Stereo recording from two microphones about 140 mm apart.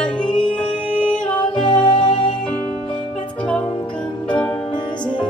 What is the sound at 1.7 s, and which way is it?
Music, 35° left (ahead or behind).